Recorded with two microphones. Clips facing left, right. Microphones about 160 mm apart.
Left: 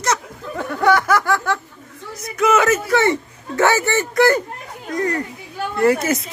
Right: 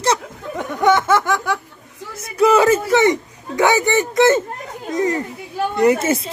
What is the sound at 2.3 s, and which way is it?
Speech, 30° right (ahead or behind).